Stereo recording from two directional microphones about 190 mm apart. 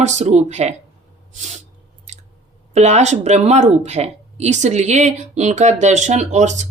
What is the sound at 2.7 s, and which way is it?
Speech, 35° right (ahead or behind).